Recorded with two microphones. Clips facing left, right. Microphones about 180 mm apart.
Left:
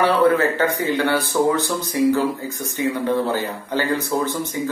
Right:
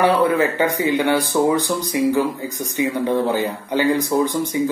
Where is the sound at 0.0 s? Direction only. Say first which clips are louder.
Even; 15° right (ahead or behind).